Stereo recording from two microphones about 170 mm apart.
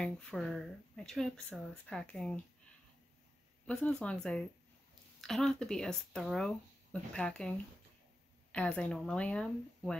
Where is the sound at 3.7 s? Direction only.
5° left (ahead or behind).